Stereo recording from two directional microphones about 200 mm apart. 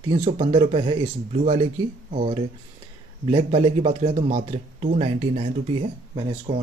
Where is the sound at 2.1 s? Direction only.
30° right (ahead or behind).